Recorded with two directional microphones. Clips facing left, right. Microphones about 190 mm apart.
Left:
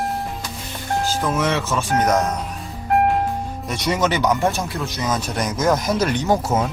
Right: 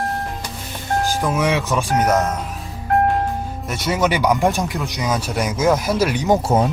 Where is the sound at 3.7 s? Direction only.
5° right (ahead or behind).